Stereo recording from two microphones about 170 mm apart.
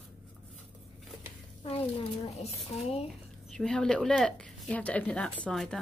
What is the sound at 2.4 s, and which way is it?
Speech, 40° left (ahead or behind).